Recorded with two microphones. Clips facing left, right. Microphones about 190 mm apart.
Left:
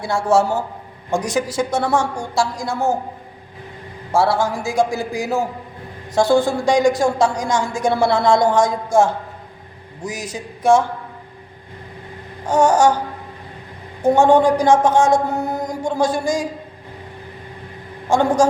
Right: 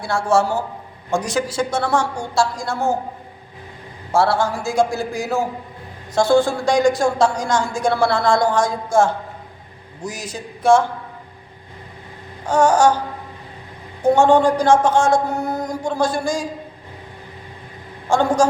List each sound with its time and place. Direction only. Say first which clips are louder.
0.0 s a man's voice: left 1 dB; 20° left (ahead or behind)
4.1 s a woman's voice: even; 15° left (ahead or behind)
12.5 s a woman's voice: even; 20° left (ahead or behind)
14.1 s a woman's voice: left 1 dB; 15° left (ahead or behind)
18.1 s a woman's voice: left 1 dB; 15° left (ahead or behind)